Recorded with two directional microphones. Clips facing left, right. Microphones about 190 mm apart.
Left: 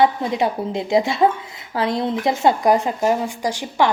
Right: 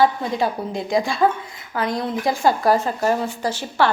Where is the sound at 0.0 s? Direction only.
20° left (ahead or behind).